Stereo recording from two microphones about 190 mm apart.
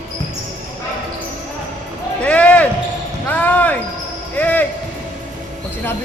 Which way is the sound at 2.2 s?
5° left (ahead or behind).